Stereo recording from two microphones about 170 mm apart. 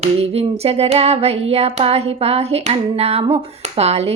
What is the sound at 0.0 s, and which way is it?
Child singing, 35° right (ahead or behind).